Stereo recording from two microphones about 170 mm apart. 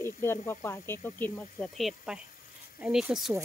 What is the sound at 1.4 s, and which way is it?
Speech, centre (ahead or behind).